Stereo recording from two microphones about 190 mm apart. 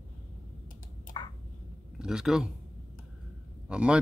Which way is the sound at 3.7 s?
5° right (ahead or behind).